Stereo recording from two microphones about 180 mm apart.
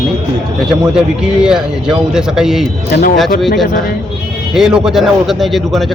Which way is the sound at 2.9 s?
60° left (ahead or behind).